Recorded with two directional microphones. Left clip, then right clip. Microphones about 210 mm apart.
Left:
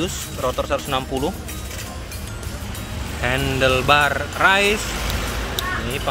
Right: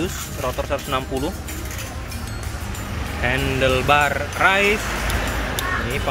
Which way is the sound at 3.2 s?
10° left (ahead or behind).